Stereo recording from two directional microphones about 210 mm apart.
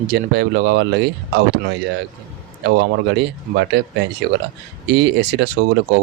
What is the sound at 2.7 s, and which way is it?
Speech, 55° right (ahead or behind).